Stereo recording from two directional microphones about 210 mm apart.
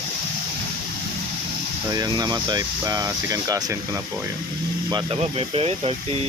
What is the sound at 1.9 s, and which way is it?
Speech, 20° right (ahead or behind).